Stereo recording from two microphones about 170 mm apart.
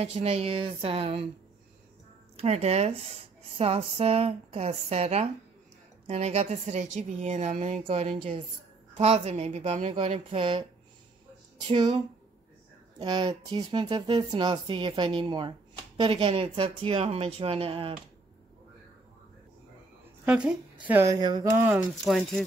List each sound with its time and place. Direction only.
0.0 s speech: 35° right (ahead or behind)
2.3 s a woman's voice: 40° right (ahead or behind)
7.8 s speech: 35° right (ahead or behind)
11.6 s speech: 35° right (ahead or behind)
13.0 s speech: 25° right (ahead or behind)
20.2 s a woman's voice: 5° right (ahead or behind); by 21.5 s 25° right (ahead or behind)
21.5 s a woman's voice: 10° right (ahead or behind)
22.0 s speech: centre (ahead or behind)